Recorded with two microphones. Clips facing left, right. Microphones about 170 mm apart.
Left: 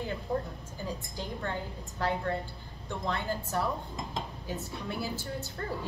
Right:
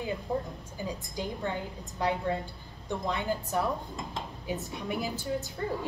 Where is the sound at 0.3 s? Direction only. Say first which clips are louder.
Even; 20° right (ahead or behind).